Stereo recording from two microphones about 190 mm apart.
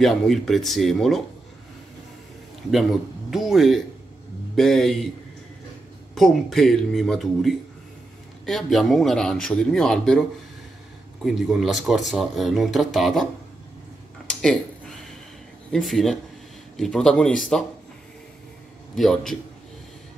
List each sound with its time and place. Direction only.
0.0 s speech: centre (ahead or behind)
2.7 s speech: centre (ahead or behind)
6.1 s speech: centre (ahead or behind)
11.2 s speech: centre (ahead or behind)
14.4 s a sound: 5° left (ahead or behind)
15.7 s speech: centre (ahead or behind)
18.9 s speech: centre (ahead or behind)